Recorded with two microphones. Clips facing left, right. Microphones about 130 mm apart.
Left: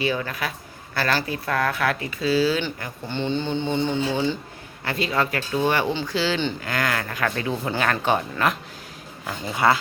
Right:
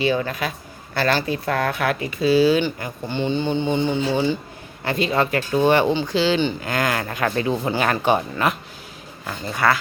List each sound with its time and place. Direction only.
0.0 s speech: 25° right (ahead or behind)
7.7 s speech: 15° right (ahead or behind)
9.5 s speech: 20° left (ahead or behind)